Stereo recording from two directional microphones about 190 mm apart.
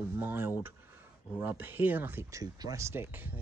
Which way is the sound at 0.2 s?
10° right (ahead or behind).